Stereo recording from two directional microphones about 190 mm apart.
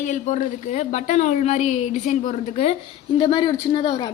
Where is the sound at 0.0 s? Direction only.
40° left (ahead or behind); by 4.1 s 25° left (ahead or behind).